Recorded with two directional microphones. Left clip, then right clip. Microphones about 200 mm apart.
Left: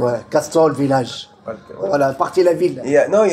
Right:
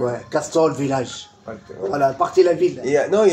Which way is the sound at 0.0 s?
40° left (ahead or behind).